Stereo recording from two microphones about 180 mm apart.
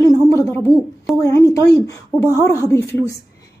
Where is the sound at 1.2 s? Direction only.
15° left (ahead or behind).